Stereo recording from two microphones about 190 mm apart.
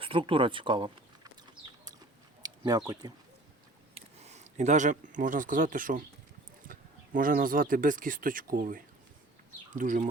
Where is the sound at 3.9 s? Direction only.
35° right (ahead or behind).